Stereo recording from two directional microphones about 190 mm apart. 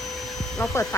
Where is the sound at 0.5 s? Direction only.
10° left (ahead or behind).